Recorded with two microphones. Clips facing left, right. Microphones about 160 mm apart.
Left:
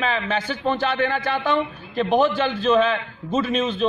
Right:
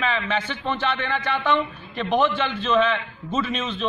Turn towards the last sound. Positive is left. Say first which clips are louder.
# left 5 dB
turn(degrees=40)  # may be behind; listen again after turning